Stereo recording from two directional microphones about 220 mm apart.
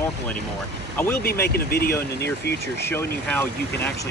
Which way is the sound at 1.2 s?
45° left (ahead or behind).